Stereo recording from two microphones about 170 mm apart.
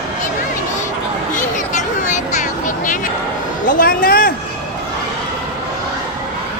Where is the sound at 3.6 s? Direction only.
55° left (ahead or behind).